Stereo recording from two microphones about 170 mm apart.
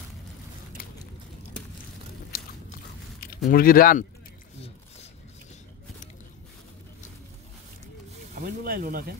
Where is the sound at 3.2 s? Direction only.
60° left (ahead or behind).